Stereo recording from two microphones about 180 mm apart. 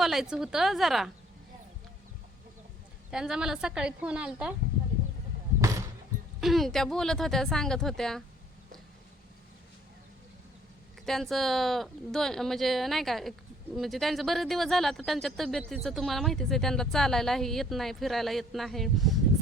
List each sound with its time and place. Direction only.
0.0 s speech: centre (ahead or behind)
3.1 s speech: 5° right (ahead or behind)
5.5 s a sound: 15° right (ahead or behind)
6.4 s speech: centre (ahead or behind)
11.0 s speech: centre (ahead or behind)